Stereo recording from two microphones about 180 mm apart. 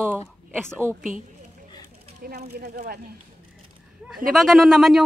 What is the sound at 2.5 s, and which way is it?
Speech, 60° right (ahead or behind).